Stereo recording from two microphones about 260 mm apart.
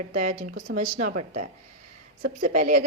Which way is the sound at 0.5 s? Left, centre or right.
Right.